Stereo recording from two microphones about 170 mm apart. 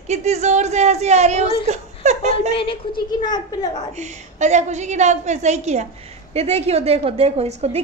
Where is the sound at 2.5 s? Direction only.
30° left (ahead or behind).